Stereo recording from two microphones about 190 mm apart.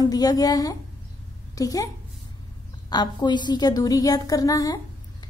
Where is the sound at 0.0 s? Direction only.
20° left (ahead or behind).